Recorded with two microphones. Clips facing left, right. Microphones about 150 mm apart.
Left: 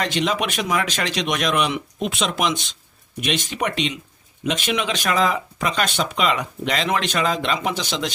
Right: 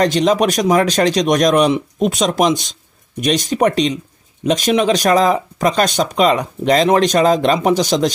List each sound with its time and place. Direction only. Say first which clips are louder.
0.0 s speech: right 9 dB; 35° right (ahead or behind)